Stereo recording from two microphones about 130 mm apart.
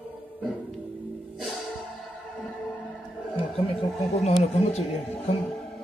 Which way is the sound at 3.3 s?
45° left (ahead or behind).